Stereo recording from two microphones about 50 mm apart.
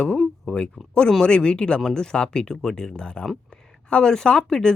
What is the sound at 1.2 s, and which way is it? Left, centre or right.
Speech, centre.